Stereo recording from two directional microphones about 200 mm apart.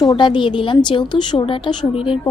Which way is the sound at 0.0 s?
20° left (ahead or behind).